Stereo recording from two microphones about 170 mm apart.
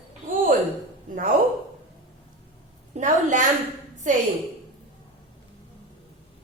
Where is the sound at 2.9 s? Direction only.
45° right (ahead or behind).